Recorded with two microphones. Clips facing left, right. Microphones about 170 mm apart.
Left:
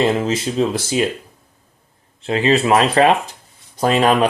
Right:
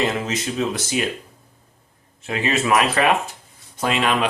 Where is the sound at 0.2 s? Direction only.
30° left (ahead or behind).